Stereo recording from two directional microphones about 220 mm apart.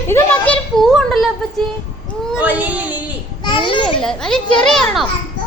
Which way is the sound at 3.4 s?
20° left (ahead or behind).